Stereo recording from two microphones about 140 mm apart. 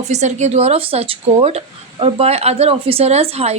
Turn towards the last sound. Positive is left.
turn(degrees=-45)  # may be behind; listen again after turning